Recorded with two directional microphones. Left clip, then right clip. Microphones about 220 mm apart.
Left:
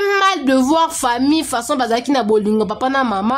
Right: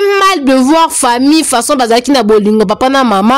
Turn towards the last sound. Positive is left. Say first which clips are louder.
# right 8 dB
turn(degrees=-35)  # may be behind; listen again after turning